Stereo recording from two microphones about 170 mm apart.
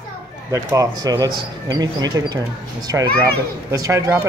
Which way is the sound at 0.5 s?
20° right (ahead or behind).